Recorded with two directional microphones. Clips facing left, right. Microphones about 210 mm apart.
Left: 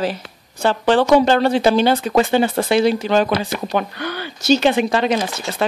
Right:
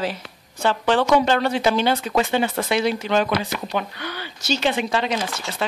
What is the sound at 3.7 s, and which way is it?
Speech, 50° left (ahead or behind).